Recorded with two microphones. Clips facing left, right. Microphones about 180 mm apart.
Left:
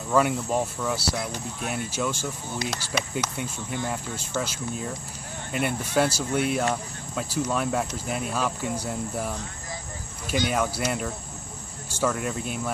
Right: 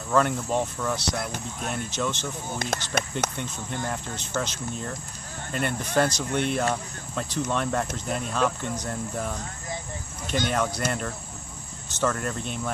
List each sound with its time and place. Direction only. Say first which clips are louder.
0.1 s speech: left 1 dB; 5° left (ahead or behind)
2.6 s speech: right 1 dB; 50° right (ahead or behind)
3.3 s speech: left 1 dB; 10° left (ahead or behind)